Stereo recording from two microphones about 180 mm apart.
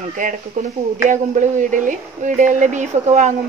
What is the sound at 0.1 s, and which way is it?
Speech, 45° right (ahead or behind).